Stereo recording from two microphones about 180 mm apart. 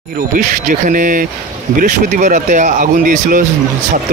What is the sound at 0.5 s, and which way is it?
Speech, 50° right (ahead or behind).